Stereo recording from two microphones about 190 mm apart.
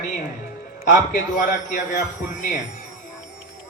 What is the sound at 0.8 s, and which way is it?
A man's voice, 40° left (ahead or behind).